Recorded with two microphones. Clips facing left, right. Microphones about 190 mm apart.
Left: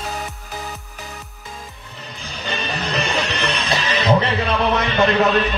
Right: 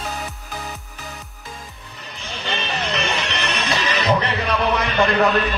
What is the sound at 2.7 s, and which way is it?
Music, 35° left (ahead or behind).